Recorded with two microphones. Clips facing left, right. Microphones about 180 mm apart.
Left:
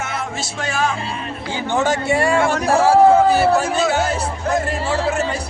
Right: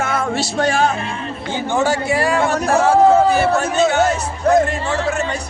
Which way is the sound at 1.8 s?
20° left (ahead or behind).